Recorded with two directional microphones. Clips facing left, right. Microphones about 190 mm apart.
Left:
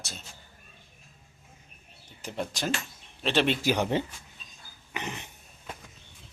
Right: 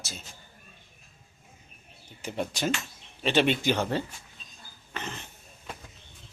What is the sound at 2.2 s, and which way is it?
A man's voice, centre (ahead or behind).